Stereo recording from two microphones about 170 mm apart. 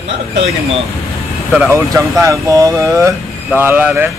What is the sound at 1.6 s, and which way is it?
A man's voice, 15° right (ahead or behind).